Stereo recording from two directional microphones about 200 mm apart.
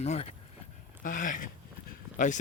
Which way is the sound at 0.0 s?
35° left (ahead or behind).